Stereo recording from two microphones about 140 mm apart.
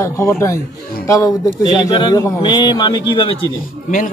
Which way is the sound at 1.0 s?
25° left (ahead or behind).